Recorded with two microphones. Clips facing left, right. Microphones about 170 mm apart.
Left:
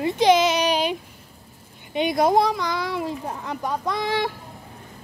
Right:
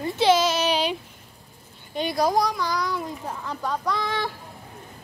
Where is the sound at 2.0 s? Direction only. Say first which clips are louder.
Left 3 dB; 25° left (ahead or behind).